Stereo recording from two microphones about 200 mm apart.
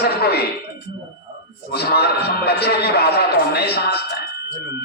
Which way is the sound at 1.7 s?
55° left (ahead or behind).